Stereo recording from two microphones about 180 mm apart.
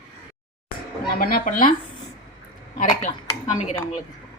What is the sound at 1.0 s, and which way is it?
Speech, 55° left (ahead or behind).